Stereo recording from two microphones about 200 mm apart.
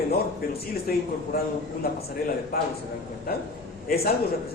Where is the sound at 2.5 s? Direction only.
50° left (ahead or behind).